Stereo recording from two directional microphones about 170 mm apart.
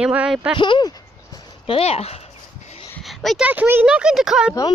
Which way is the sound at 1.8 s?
35° left (ahead or behind).